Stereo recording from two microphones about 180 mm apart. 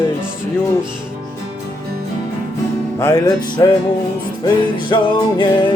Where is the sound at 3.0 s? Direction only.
20° left (ahead or behind).